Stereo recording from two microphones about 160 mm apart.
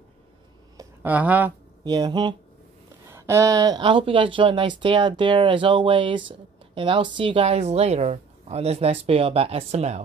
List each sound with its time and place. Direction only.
1.0 s speech: 10° right (ahead or behind)
1.9 s speech: 25° right (ahead or behind); by 10.0 s 45° right (ahead or behind)